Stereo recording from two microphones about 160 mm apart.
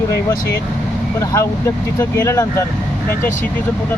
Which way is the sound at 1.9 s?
20° left (ahead or behind).